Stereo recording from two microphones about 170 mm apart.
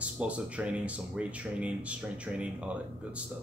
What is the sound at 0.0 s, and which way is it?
Speech, 5° right (ahead or behind).